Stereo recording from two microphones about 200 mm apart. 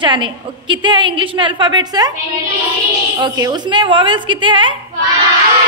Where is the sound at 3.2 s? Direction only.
20° right (ahead or behind).